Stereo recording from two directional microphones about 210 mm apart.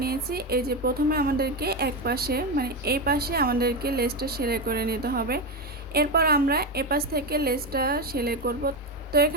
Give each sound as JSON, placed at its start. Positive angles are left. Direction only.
{"t": 0.0, "sound": "a woman's voice", "side_deg": -45}